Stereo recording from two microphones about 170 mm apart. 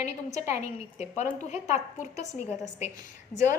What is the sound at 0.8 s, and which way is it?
A woman's voice, 40° left (ahead or behind).